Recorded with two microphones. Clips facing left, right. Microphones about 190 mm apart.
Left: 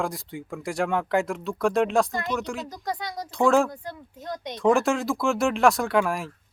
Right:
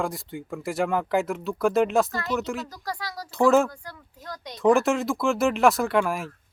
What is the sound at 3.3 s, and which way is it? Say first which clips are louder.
Speech: right 1 dB; centre (ahead or behind).